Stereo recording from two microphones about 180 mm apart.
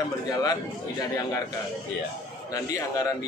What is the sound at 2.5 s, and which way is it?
Speech, 20° left (ahead or behind).